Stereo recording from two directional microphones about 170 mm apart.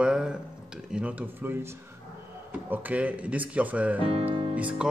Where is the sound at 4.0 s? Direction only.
35° right (ahead or behind).